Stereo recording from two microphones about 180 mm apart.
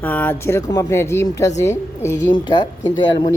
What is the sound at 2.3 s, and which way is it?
Speech, 25° left (ahead or behind).